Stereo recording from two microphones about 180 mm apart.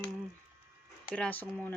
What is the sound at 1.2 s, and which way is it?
Speech, 10° left (ahead or behind).